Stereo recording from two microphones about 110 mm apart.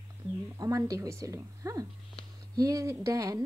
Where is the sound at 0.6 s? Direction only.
30° right (ahead or behind).